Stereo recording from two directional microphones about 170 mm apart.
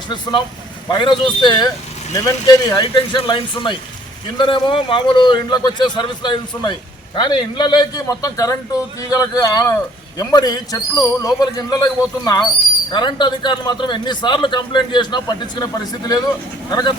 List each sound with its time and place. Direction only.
0.1 s a man's voice: 25° left (ahead or behind)